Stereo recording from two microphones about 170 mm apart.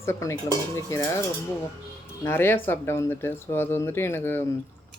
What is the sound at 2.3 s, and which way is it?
Speech, 15° left (ahead or behind).